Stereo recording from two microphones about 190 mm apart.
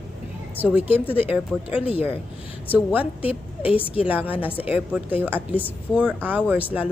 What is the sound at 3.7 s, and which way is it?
Speech, 30° left (ahead or behind).